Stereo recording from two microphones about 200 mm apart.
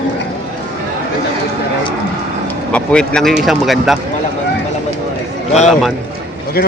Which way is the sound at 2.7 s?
5° left (ahead or behind).